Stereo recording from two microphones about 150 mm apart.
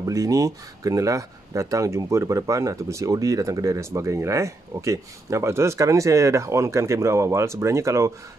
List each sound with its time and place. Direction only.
0.0 s speech: 20° right (ahead or behind)